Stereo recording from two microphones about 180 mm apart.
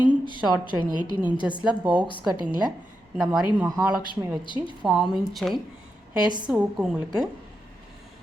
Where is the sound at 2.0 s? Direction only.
25° left (ahead or behind).